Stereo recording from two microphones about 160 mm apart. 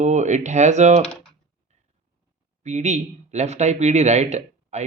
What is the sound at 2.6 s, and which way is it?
Speech, 45° right (ahead or behind).